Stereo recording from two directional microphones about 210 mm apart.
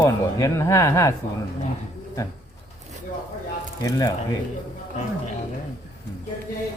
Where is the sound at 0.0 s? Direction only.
15° left (ahead or behind).